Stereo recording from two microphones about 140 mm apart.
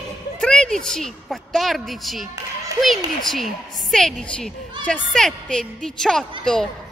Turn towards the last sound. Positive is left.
turn(degrees=5)  # may be behind; listen again after turning